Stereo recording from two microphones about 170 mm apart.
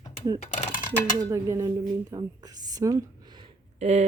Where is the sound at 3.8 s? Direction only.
40° right (ahead or behind).